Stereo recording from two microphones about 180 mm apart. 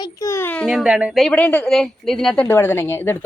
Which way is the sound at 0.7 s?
5° right (ahead or behind).